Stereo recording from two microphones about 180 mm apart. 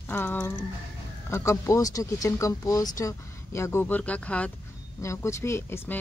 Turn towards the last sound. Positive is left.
turn(degrees=15)  # may be behind; listen again after turning